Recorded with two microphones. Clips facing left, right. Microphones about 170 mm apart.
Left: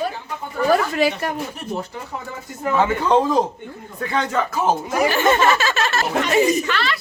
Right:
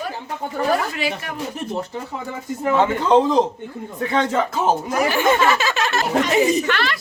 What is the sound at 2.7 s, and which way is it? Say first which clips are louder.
A man's voice: right 1 dB; 20° right (ahead or behind).